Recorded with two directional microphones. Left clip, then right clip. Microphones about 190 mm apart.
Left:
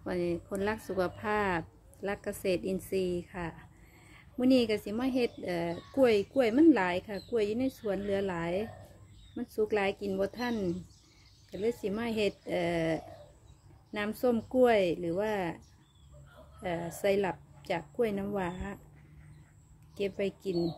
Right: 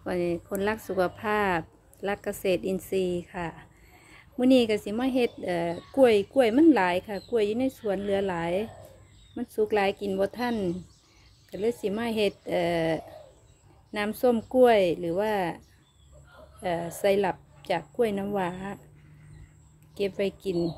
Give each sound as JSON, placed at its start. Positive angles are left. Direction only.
{"t": 0.0, "sound": "speech", "side_deg": -15}
{"t": 11.8, "sound": "speech", "side_deg": -20}
{"t": 16.6, "sound": "speech", "side_deg": -20}
{"t": 20.0, "sound": "a woman's voice", "side_deg": -20}